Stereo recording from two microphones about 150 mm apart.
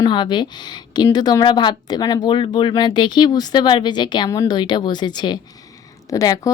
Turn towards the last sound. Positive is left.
turn(degrees=25)  # may be behind; listen again after turning